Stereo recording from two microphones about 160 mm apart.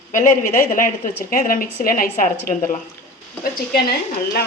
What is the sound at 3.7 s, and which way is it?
Speech, 75° left (ahead or behind).